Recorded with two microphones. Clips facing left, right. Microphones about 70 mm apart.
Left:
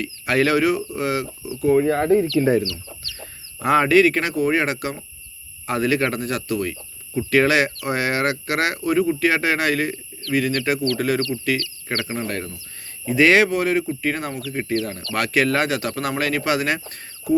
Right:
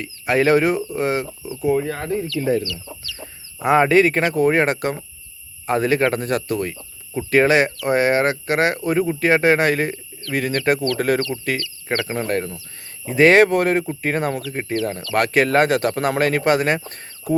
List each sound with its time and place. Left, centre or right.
0.0 s speech: right
1.9 s speech: left
3.6 s speech: right
14.5 s speech: right